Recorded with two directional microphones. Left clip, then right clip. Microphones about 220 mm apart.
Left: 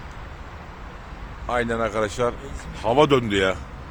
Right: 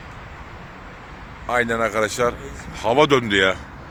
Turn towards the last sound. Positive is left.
turn(degrees=5)  # may be behind; listen again after turning